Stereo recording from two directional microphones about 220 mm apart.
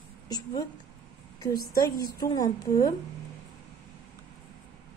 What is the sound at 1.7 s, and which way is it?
Speech, 15° left (ahead or behind).